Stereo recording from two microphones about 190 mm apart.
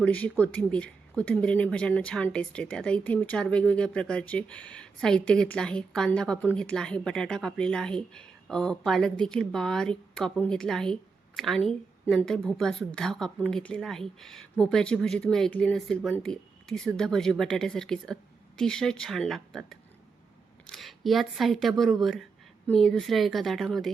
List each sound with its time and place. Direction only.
0.0 s speech: 10° left (ahead or behind)